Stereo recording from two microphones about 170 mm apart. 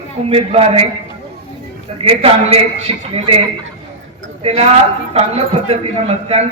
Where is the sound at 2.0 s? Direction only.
35° right (ahead or behind).